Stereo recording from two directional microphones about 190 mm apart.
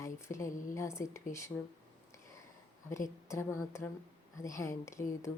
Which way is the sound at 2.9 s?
15° left (ahead or behind).